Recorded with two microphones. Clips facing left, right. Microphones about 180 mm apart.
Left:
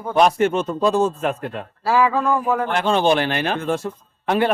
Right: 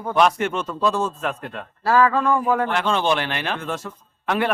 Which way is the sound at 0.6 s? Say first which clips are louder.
Left 4 dB; 30° left (ahead or behind).